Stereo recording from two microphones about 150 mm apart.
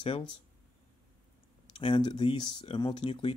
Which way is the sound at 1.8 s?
35° left (ahead or behind).